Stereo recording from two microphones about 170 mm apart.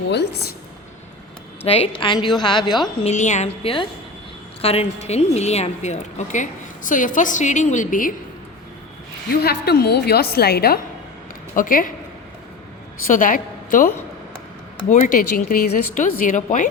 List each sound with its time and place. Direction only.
0.1 s a woman's voice: 75° left (ahead or behind)
1.6 s a woman's voice: 35° left (ahead or behind)
3.0 s a woman's voice: 45° left (ahead or behind)
9.3 s a woman's voice: 70° left (ahead or behind)
11.5 s speech: 55° left (ahead or behind)
13.1 s a woman's voice: 55° left (ahead or behind)